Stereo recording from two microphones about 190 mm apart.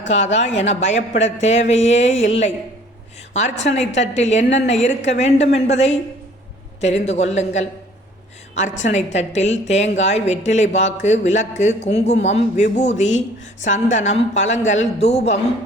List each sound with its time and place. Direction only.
0.3 s a woman's voice: 35° left (ahead or behind)
3.6 s a woman's voice: 35° left (ahead or behind)